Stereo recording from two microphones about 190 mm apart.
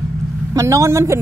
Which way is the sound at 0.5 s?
15° right (ahead or behind).